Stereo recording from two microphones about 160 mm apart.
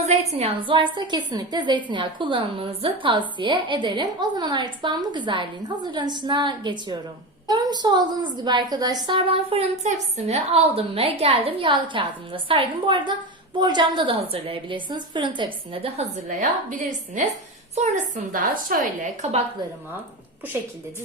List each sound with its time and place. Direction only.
0.0 s a woman's voice: 45° right (ahead or behind)
17.7 s a woman's voice: 45° right (ahead or behind)